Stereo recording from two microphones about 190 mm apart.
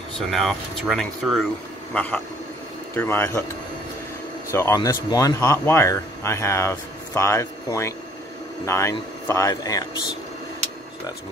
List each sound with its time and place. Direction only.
0.3 s speech: centre (ahead or behind)
4.5 s speech: 15° left (ahead or behind)